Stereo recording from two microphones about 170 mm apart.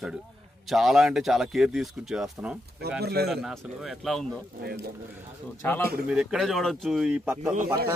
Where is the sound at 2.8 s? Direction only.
70° right (ahead or behind).